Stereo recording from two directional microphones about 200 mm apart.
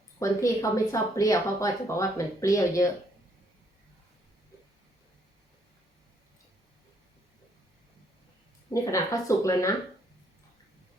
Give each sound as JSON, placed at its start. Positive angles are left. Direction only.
{"t": 0.2, "sound": "speech", "side_deg": 15}
{"t": 8.7, "sound": "speech", "side_deg": 15}